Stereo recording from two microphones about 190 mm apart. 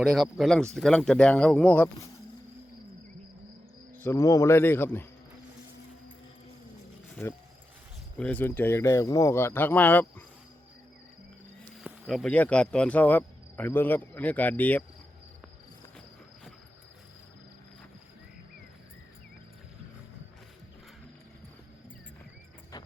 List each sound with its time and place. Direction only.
0.0 s speech: centre (ahead or behind)
3.9 s speech: 15° left (ahead or behind)
7.2 s speech: 15° left (ahead or behind)
11.8 s insect: centre (ahead or behind)
22.7 s music: 20° left (ahead or behind)